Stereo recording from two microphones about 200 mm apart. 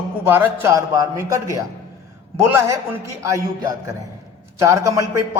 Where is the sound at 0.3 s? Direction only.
10° right (ahead or behind).